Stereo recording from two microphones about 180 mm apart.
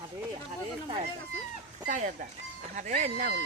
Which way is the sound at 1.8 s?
45° right (ahead or behind).